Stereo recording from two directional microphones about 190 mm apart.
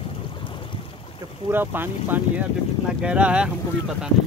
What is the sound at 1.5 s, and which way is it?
Speech, 10° right (ahead or behind).